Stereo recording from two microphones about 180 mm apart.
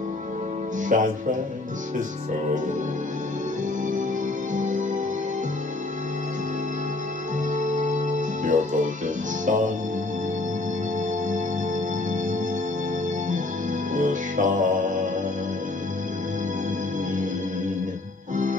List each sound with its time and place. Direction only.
0.9 s speech: 50° right (ahead or behind)
4.6 s music: 45° right (ahead or behind)
7.5 s music: 45° right (ahead or behind)
13.9 s music: 45° right (ahead or behind)